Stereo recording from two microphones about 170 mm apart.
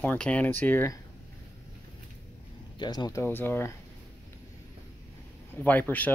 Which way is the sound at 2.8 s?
25° left (ahead or behind).